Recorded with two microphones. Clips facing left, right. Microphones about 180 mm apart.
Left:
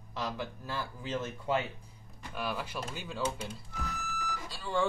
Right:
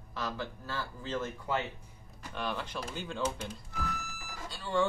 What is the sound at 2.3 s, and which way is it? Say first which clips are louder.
Speech: even; 10° left (ahead or behind).